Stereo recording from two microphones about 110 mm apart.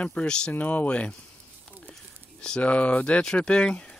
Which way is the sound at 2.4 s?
10° left (ahead or behind).